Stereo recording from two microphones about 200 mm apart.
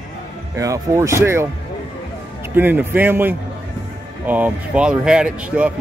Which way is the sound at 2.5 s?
10° right (ahead or behind).